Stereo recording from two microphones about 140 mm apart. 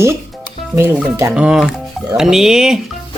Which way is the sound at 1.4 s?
5° right (ahead or behind).